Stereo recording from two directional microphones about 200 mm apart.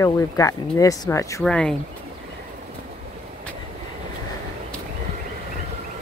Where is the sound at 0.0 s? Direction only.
15° left (ahead or behind).